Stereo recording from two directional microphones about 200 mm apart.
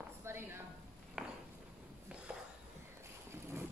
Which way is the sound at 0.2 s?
10° right (ahead or behind).